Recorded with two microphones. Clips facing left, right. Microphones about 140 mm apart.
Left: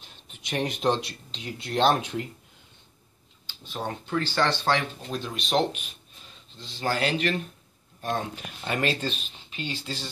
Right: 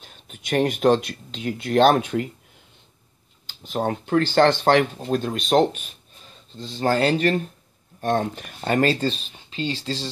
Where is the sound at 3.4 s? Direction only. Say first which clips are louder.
Right 8 dB; 50° right (ahead or behind).